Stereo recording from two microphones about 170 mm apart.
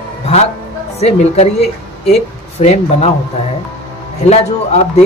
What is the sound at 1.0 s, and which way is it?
A man's voice, 40° left (ahead or behind).